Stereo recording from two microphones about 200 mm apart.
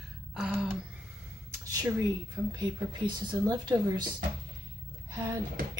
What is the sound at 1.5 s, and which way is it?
Speech, 20° right (ahead or behind).